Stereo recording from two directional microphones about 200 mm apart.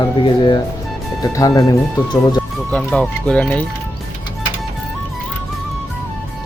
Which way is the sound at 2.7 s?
5° left (ahead or behind).